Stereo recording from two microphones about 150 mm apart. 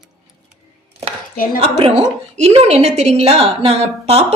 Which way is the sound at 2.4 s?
45° right (ahead or behind).